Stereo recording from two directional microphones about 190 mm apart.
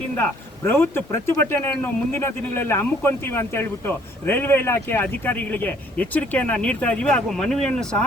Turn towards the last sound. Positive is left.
turn(degrees=5)  # may be behind; listen again after turning